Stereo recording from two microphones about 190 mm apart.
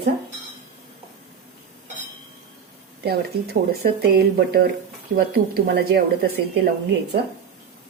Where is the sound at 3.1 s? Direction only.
55° right (ahead or behind).